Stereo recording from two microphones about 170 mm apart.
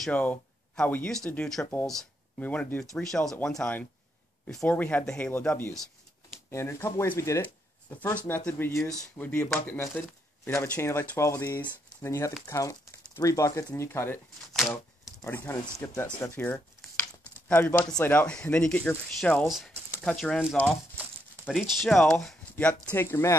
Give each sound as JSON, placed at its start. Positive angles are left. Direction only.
{"t": 0.0, "sound": "speech", "side_deg": 10}
{"t": 15.2, "sound": "speech", "side_deg": 15}